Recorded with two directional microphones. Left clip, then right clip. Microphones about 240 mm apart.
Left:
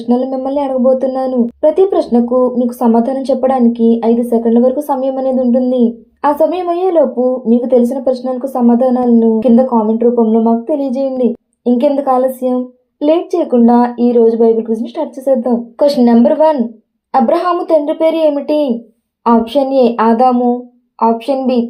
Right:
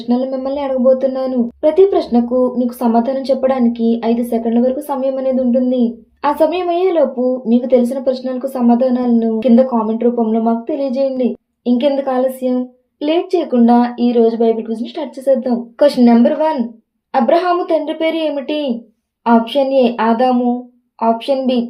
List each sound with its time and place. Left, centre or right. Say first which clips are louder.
0.1 s speech: left 3 dB; left
15.4 s speech: left 1 dB; centre